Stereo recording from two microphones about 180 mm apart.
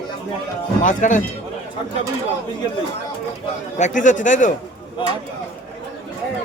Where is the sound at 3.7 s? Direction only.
45° left (ahead or behind).